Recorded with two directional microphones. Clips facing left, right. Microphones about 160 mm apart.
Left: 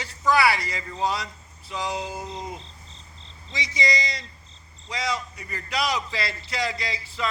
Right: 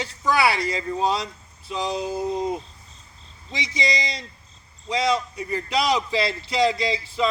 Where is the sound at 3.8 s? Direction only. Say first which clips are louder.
Even; 15° right (ahead or behind).